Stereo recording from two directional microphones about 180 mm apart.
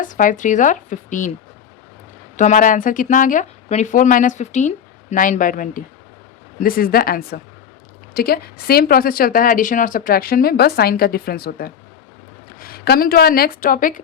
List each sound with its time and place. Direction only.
0.0 s speech: 45° left (ahead or behind)
2.3 s speech: 45° left (ahead or behind)